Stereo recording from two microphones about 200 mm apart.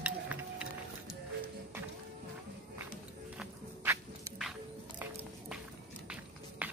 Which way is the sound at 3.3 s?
10° right (ahead or behind).